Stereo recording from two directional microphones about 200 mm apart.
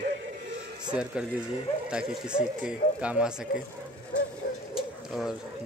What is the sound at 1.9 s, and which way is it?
Speech, 5° right (ahead or behind).